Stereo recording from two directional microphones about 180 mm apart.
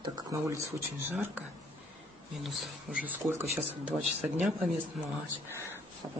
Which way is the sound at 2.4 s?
5° right (ahead or behind).